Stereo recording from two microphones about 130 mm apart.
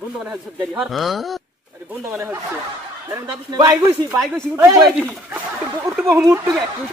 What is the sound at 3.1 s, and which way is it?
Speech, 25° right (ahead or behind).